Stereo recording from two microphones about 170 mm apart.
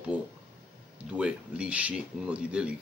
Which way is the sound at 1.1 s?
5° right (ahead or behind).